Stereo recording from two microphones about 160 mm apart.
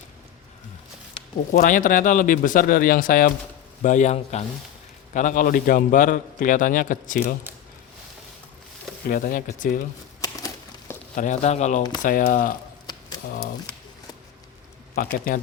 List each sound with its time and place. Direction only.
1.6 s a man's voice: 55° left (ahead or behind)
3.8 s speech: 45° left (ahead or behind)
5.1 s a man's voice: 55° left (ahead or behind)
9.0 s a man's voice: 60° left (ahead or behind)
10.2 s a sound: 20° left (ahead or behind)
11.1 s speech: 50° left (ahead or behind)
12.0 s a man's voice: 60° left (ahead or behind)
14.9 s a man's voice: 65° left (ahead or behind)